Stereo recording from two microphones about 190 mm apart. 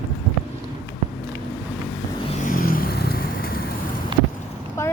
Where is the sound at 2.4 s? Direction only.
45° left (ahead or behind).